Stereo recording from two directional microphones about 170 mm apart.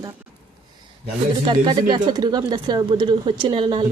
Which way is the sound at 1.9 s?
25° right (ahead or behind).